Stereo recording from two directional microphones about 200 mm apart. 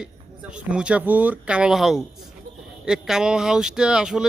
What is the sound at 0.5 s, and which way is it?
Speech, 5° right (ahead or behind).